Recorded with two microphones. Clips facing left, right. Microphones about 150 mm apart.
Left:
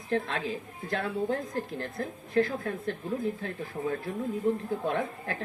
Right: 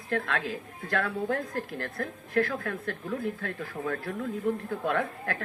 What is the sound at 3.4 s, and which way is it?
Speech, 20° left (ahead or behind).